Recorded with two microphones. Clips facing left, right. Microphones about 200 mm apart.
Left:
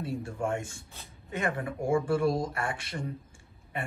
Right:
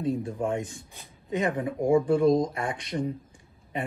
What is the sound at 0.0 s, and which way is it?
Speech, 15° right (ahead or behind).